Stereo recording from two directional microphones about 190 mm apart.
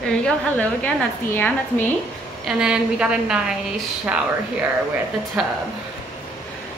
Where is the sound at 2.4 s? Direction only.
5° right (ahead or behind).